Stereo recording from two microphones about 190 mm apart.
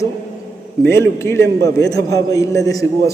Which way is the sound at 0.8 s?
15° left (ahead or behind).